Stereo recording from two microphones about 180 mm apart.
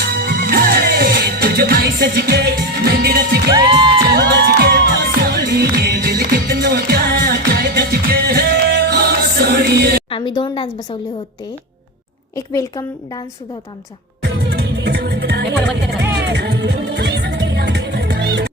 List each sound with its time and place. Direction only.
0.1 s music: 55° right (ahead or behind)
10.1 s a woman's voice: 30° left (ahead or behind)
12.4 s a woman's voice: 15° left (ahead or behind)
14.2 s music: 65° right (ahead or behind)